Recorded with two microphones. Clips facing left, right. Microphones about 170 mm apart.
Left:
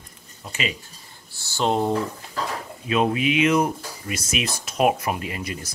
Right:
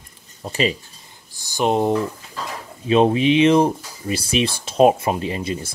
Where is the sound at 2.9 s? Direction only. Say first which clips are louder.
Right 6 dB; 30° right (ahead or behind).